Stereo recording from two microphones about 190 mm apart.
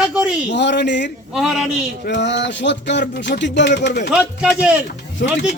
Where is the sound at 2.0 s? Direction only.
65° left (ahead or behind).